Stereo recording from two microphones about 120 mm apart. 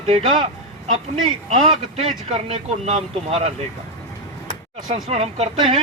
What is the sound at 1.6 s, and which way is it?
Speech, 50° right (ahead or behind).